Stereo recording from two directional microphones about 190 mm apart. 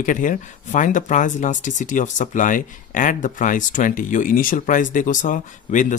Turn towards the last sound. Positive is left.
turn(degrees=40)  # may be behind; listen again after turning